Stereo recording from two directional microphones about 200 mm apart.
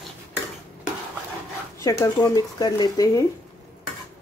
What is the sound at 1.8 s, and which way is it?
Speech, 20° left (ahead or behind).